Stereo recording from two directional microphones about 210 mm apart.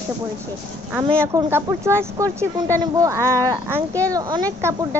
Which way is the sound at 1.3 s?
10° right (ahead or behind).